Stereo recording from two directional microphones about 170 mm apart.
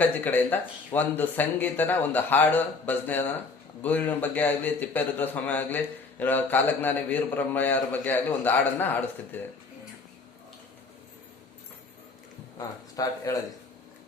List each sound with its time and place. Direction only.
0.0 s a man's voice: 10° left (ahead or behind)
12.5 s speech: 20° left (ahead or behind)